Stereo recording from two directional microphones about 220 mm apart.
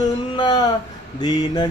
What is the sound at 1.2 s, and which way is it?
Mantra, 20° left (ahead or behind).